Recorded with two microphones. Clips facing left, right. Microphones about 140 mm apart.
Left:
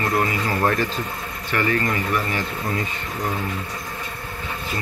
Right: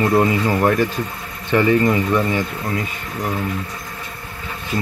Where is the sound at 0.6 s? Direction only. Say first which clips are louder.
Right 4 dB; 10° right (ahead or behind).